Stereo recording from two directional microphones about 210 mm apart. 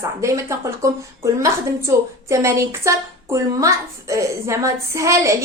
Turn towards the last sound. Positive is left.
turn(degrees=-15)  # may be behind; listen again after turning